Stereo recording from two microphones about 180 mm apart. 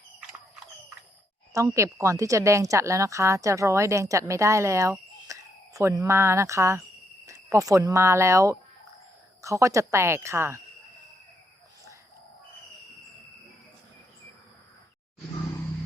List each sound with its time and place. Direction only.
1.5 s a woman's voice: 15° right (ahead or behind)